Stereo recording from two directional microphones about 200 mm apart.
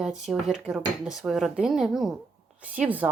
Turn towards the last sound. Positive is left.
turn(degrees=-10)  # may be behind; listen again after turning